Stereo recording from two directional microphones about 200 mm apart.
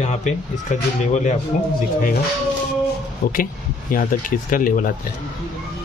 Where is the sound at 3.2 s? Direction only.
45° left (ahead or behind).